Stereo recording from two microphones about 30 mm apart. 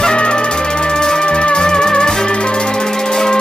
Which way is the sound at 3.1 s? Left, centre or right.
Centre.